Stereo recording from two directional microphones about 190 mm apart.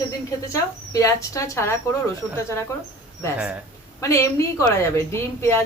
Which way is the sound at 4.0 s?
15° left (ahead or behind).